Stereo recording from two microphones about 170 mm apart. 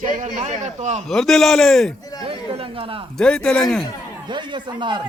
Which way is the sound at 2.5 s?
35° right (ahead or behind).